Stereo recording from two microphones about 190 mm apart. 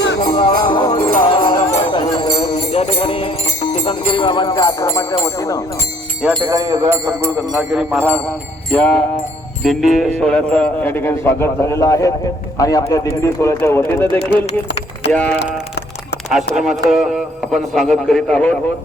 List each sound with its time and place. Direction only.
0.3 s music: 25° left (ahead or behind)
6.3 s a man's voice: 20° right (ahead or behind); by 18.5 s 5° left (ahead or behind)